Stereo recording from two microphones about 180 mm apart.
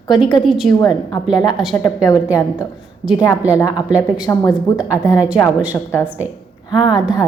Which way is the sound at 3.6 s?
20° left (ahead or behind).